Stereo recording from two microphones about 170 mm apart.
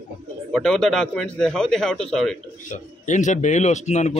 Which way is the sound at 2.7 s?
45° left (ahead or behind).